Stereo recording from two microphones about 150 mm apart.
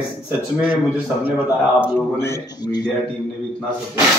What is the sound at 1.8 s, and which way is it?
A man's voice, 15° left (ahead or behind).